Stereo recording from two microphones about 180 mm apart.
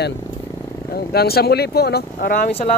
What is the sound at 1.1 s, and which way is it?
Speech, 60° left (ahead or behind).